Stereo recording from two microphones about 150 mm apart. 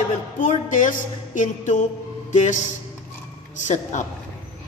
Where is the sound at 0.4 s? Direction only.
60° left (ahead or behind).